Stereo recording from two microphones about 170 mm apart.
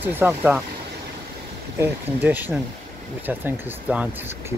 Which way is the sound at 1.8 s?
10° right (ahead or behind).